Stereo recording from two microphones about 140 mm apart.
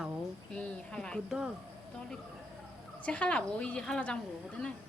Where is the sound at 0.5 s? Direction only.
5° left (ahead or behind).